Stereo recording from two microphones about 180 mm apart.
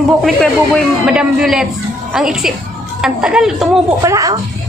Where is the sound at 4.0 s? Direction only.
15° right (ahead or behind).